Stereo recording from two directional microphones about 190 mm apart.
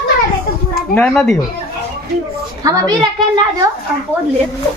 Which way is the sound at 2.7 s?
20° right (ahead or behind).